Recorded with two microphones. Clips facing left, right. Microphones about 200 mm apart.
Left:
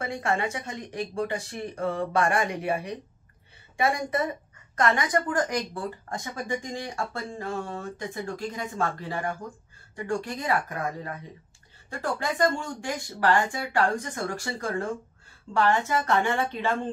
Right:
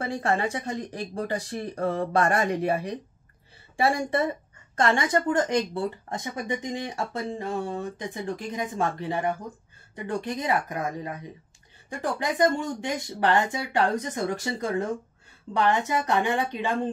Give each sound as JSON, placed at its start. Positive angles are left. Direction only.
{"t": 0.0, "sound": "a woman's voice", "side_deg": -35}
{"t": 12.2, "sound": "a woman's voice", "side_deg": -20}